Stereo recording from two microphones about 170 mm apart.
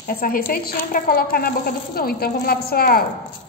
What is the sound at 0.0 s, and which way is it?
A woman's voice, 60° left (ahead or behind).